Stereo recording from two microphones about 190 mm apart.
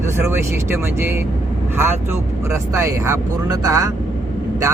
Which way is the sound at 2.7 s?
15° right (ahead or behind).